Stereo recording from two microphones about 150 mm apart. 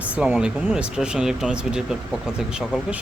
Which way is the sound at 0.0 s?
10° right (ahead or behind).